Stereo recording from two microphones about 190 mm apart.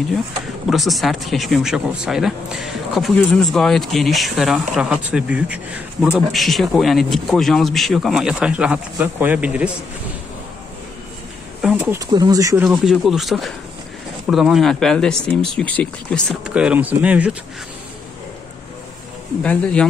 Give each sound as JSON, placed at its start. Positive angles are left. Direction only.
{"t": 0.7, "sound": "a man's voice", "side_deg": 0}
{"t": 11.6, "sound": "a sound", "side_deg": -5}
{"t": 12.1, "sound": "speech", "side_deg": -20}
{"t": 12.6, "sound": "a man's voice", "side_deg": 0}
{"t": 19.4, "sound": "a man's voice", "side_deg": 5}